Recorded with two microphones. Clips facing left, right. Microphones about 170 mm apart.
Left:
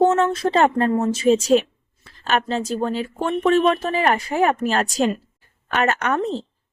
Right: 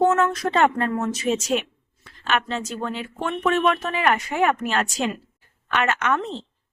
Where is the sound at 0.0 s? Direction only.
30° left (ahead or behind).